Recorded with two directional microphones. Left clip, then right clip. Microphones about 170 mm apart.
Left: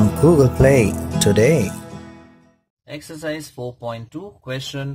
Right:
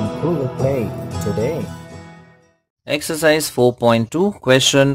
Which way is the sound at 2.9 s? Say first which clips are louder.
Right 13 dB; 35° right (ahead or behind).